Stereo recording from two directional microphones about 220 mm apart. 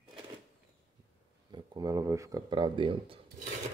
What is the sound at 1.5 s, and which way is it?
Speech, 20° right (ahead or behind).